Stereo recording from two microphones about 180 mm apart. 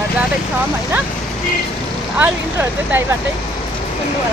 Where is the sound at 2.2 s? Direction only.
10° right (ahead or behind).